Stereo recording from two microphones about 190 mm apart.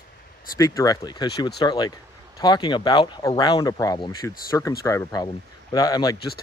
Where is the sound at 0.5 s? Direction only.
20° left (ahead or behind).